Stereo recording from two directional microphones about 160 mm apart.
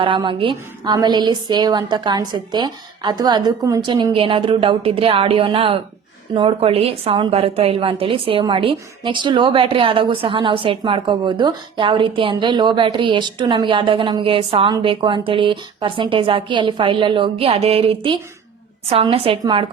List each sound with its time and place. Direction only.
0.0 s a woman's voice: 30° right (ahead or behind)